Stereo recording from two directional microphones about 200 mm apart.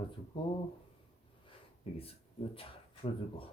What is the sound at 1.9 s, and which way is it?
Speech, 30° left (ahead or behind).